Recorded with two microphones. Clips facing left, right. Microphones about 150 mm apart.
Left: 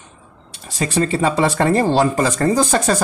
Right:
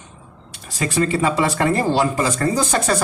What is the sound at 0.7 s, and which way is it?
Speech, 30° left (ahead or behind).